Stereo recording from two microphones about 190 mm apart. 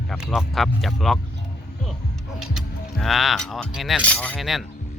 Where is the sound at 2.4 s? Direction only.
Centre (ahead or behind).